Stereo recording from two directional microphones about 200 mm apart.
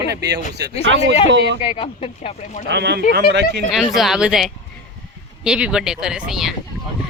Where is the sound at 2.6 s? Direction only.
60° right (ahead or behind).